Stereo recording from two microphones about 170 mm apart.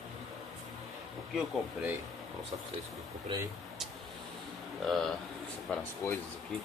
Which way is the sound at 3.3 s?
30° right (ahead or behind).